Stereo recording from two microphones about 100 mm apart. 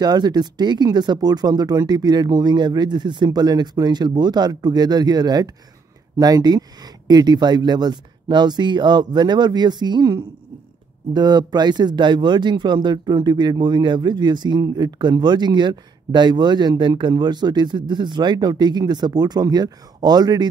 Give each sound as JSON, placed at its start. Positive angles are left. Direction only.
{"t": 0.0, "sound": "speech", "side_deg": -45}